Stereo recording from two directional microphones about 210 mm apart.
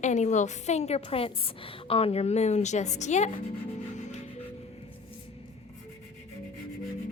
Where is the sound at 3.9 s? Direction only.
35° left (ahead or behind).